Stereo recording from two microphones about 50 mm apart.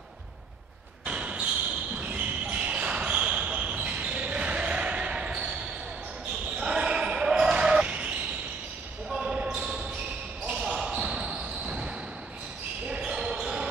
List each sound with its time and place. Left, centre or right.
1.0 s basketball bounce: right
9.1 s basketball bounce: centre
9.4 s basketball bounce: right
12.9 s basketball bounce: centre